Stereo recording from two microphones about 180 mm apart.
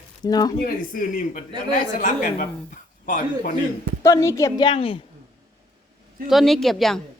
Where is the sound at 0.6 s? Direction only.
50° left (ahead or behind).